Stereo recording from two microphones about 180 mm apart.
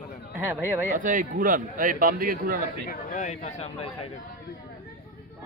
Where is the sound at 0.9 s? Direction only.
45° right (ahead or behind).